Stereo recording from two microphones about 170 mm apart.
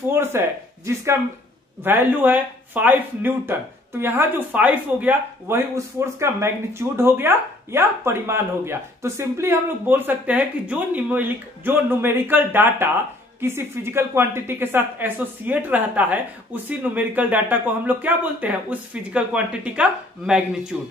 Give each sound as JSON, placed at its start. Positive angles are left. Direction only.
{"t": 0.1, "sound": "speech", "side_deg": -15}